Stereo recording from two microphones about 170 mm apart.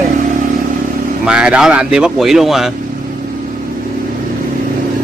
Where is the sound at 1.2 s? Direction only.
5° right (ahead or behind).